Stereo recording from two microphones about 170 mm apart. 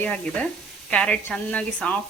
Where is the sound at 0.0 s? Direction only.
5° left (ahead or behind).